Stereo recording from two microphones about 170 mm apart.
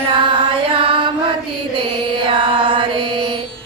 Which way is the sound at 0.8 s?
30° right (ahead or behind).